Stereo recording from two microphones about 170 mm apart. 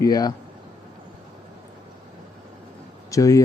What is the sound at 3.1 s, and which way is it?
Speech, 20° left (ahead or behind).